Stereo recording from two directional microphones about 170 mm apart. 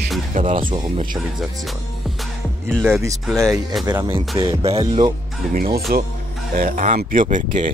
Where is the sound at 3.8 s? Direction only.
20° right (ahead or behind).